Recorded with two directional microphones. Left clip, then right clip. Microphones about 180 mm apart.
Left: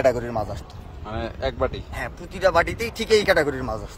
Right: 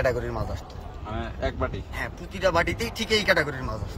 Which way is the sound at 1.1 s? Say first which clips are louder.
Left 3 dB; 35° left (ahead or behind).